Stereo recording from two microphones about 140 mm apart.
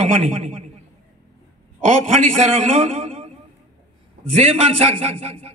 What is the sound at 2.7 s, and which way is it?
Speech, 45° right (ahead or behind).